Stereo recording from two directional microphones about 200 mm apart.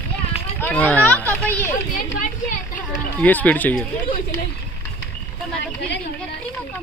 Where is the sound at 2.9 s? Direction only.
10° left (ahead or behind).